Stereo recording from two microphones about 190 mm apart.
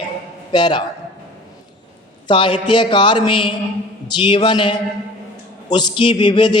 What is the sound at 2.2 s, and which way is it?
A man's voice, 25° left (ahead or behind).